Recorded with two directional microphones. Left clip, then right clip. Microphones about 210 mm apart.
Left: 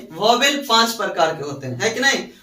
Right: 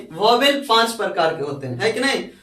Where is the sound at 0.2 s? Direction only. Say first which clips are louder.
Right 1 dB; 15° right (ahead or behind).